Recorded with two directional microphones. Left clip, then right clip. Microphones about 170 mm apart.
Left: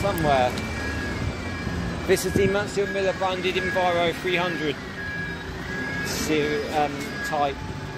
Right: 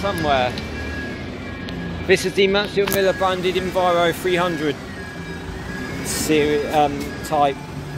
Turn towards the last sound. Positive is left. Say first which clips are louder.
# right 6 dB
turn(degrees=-40)  # may be behind; listen again after turning